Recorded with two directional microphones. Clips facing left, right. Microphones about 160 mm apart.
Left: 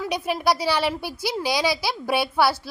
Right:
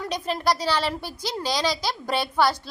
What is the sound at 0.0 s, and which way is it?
Speech, 5° left (ahead or behind).